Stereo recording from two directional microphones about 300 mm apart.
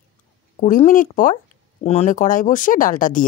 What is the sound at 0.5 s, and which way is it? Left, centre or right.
Speech, left.